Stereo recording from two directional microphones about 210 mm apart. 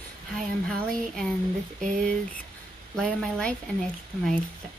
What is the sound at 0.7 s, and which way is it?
Speech, centre (ahead or behind).